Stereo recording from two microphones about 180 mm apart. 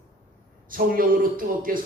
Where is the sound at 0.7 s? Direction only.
50° right (ahead or behind).